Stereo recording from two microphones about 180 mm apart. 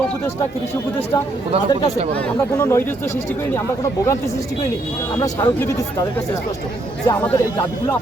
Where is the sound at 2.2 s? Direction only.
10° left (ahead or behind).